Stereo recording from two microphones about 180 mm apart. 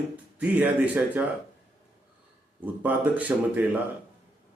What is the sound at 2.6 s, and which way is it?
A man's voice, 10° right (ahead or behind).